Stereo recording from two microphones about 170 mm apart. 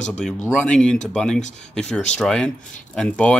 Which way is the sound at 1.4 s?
45° left (ahead or behind).